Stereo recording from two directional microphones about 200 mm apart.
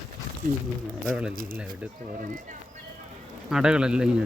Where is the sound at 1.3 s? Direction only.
45° right (ahead or behind).